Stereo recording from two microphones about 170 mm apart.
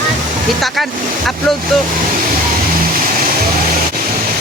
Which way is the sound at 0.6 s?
Centre (ahead or behind).